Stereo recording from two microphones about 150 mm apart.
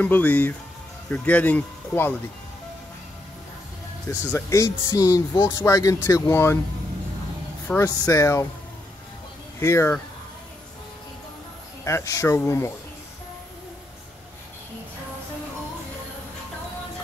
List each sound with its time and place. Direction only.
0.0 s speech: 10° left (ahead or behind)
4.3 s speech: 20° left (ahead or behind)
7.8 s speech: 20° left (ahead or behind)
9.6 s speech: 20° left (ahead or behind)
11.8 s speech: 20° left (ahead or behind)